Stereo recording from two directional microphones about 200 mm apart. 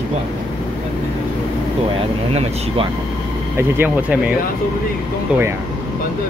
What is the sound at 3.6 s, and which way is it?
Speech, 10° right (ahead or behind).